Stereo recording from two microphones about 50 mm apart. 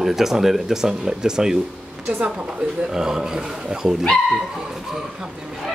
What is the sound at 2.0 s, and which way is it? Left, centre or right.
Speech, right.